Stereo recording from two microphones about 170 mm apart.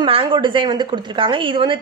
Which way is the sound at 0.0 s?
30° right (ahead or behind).